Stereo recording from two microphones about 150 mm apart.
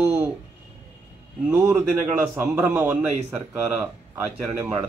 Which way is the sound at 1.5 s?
10° right (ahead or behind).